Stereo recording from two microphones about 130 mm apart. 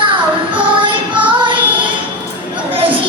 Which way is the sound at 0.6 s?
40° right (ahead or behind).